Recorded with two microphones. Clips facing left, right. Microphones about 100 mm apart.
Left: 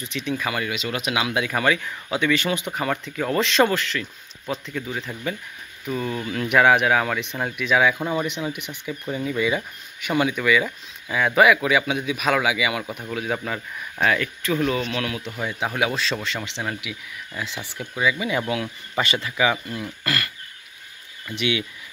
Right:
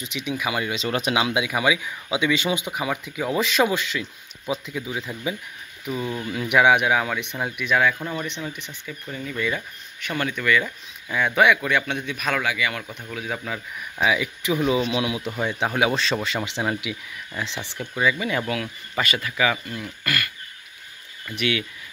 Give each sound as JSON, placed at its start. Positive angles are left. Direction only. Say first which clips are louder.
{"t": 0.0, "sound": "speech", "louder": "left 1 dB", "side_deg": -15}
{"t": 1.4, "sound": "speech", "louder": "left 1 dB", "side_deg": -10}
{"t": 3.7, "sound": "speech", "louder": "left 1 dB", "side_deg": -15}
{"t": 17.4, "sound": "speech", "louder": "right 1 dB", "side_deg": 5}
{"t": 18.5, "sound": "speech", "louder": "left 2 dB", "side_deg": 25}
{"t": 21.4, "sound": "speech", "louder": "even", "side_deg": 20}